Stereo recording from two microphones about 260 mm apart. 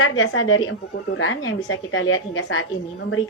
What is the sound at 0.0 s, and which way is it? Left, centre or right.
Speech, left.